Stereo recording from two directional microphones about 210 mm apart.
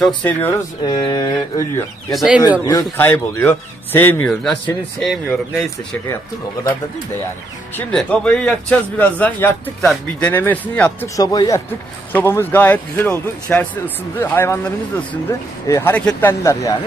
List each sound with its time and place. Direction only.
0.0 s a man's voice: 10° left (ahead or behind)
1.0 s mantra: 20° left (ahead or behind)
2.0 s speech: centre (ahead or behind)
2.6 s a man's voice: 10° left (ahead or behind)
7.7 s a man's voice: 5° left (ahead or behind)
15.7 s a man's voice: 10° left (ahead or behind)